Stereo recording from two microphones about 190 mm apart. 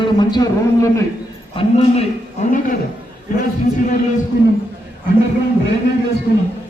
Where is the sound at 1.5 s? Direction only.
30° left (ahead or behind).